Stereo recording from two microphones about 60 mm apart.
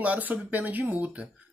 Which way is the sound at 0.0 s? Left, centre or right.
Right.